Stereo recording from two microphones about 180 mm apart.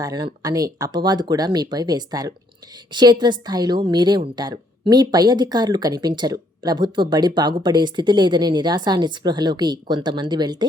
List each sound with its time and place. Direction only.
0.0 s a woman's voice: 20° right (ahead or behind)